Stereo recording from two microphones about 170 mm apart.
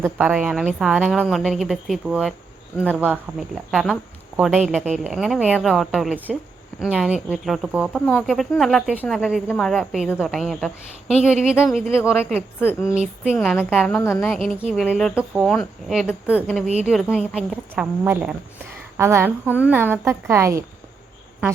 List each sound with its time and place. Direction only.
0.0 s speech: 10° right (ahead or behind)
11.6 s speech: 10° left (ahead or behind)
12.9 s speech: 5° right (ahead or behind); by 16.6 s 10° left (ahead or behind)
16.8 s speech: 5° right (ahead or behind)